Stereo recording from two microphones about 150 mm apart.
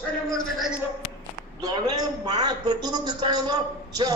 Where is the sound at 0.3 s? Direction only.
5° left (ahead or behind).